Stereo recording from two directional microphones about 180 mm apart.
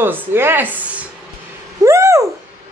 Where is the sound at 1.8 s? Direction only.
15° right (ahead or behind).